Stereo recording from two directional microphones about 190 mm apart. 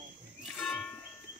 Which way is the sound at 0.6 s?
5° left (ahead or behind).